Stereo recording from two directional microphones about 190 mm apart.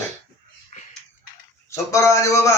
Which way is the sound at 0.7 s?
40° left (ahead or behind).